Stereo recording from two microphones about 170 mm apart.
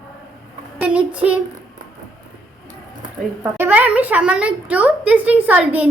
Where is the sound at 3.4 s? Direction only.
10° right (ahead or behind).